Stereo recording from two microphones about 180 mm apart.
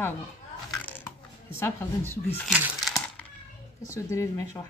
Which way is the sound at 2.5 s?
5° right (ahead or behind).